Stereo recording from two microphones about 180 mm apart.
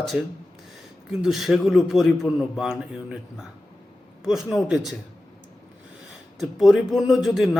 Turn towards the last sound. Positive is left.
turn(degrees=0)  # may be behind; listen again after turning